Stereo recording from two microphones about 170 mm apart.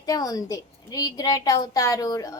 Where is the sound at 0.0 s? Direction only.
20° left (ahead or behind).